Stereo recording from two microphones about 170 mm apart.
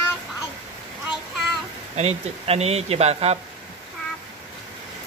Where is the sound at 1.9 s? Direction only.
40° right (ahead or behind).